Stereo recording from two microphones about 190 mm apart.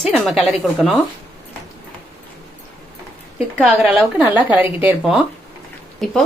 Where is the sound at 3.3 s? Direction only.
5° right (ahead or behind).